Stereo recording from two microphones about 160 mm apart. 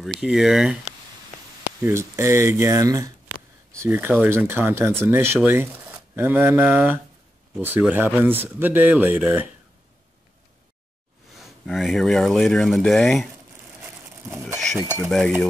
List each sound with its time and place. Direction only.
0.0 s speech: 5° right (ahead or behind)
1.8 s speech: 15° right (ahead or behind)
11.3 s speech: centre (ahead or behind)
14.8 s speech: 15° right (ahead or behind)
15.0 s speech: centre (ahead or behind)